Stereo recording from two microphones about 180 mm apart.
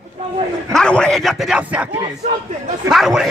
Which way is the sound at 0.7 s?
5° left (ahead or behind).